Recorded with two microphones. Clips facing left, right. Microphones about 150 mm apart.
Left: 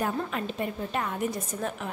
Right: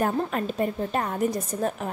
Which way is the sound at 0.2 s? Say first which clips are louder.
Right 5 dB; 40° right (ahead or behind).